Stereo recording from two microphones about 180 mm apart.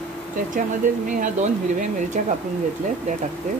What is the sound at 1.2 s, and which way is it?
Speech, 45° right (ahead or behind).